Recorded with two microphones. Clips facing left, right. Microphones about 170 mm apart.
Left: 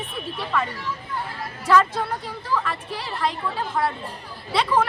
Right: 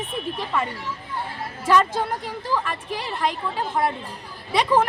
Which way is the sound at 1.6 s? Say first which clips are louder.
Even; 20° right (ahead or behind).